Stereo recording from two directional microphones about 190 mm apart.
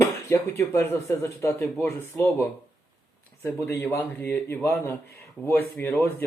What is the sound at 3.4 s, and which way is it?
Speech, 15° left (ahead or behind).